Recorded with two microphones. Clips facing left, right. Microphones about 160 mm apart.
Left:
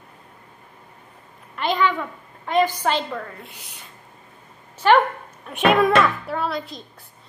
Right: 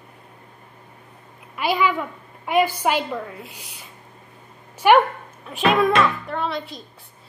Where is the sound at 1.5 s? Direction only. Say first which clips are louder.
Even; 10° right (ahead or behind).